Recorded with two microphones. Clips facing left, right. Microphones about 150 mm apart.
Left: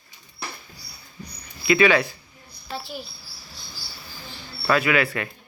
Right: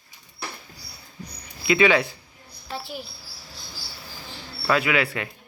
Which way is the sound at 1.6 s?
20° right (ahead or behind).